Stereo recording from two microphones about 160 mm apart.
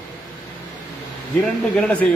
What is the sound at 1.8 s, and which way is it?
Speech, 10° left (ahead or behind).